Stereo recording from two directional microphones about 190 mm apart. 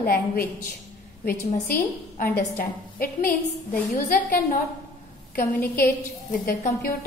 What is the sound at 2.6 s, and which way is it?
Speech, 50° left (ahead or behind).